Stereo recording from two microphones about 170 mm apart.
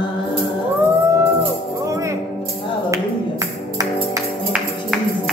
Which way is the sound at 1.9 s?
20° right (ahead or behind).